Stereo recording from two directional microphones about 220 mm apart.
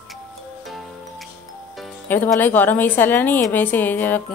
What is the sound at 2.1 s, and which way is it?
A woman's voice, 10° left (ahead or behind).